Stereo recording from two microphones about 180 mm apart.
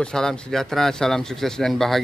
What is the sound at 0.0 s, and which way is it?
Speech, 5° left (ahead or behind).